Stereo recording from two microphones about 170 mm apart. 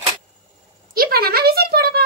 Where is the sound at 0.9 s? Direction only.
60° right (ahead or behind).